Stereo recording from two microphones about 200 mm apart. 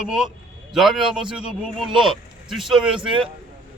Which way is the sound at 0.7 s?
Centre (ahead or behind).